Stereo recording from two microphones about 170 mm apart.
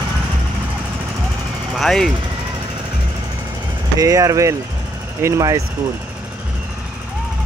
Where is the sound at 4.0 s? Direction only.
20° right (ahead or behind).